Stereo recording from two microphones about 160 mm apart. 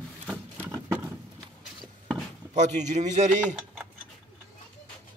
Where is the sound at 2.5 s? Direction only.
50° right (ahead or behind).